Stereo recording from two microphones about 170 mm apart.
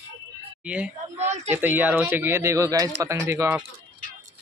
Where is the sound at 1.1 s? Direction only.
40° right (ahead or behind).